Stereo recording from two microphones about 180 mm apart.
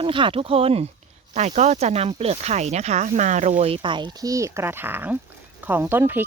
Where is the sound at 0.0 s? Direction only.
30° right (ahead or behind).